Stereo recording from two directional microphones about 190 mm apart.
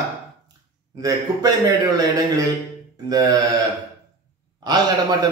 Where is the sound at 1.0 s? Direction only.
20° right (ahead or behind).